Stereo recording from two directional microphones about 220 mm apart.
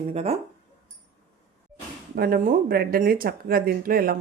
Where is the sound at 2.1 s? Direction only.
45° right (ahead or behind).